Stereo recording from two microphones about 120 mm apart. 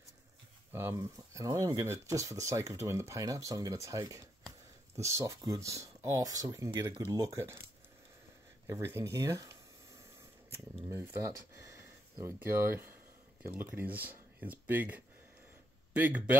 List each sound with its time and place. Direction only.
0.7 s speech: 25° right (ahead or behind)
8.6 s speech: 25° right (ahead or behind)
10.9 s speech: 25° right (ahead or behind)